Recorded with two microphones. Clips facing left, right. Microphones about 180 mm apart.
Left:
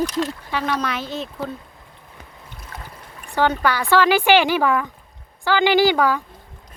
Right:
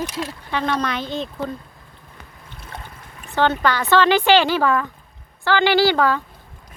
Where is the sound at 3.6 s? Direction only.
10° left (ahead or behind).